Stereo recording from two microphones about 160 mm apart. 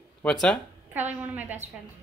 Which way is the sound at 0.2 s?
5° left (ahead or behind).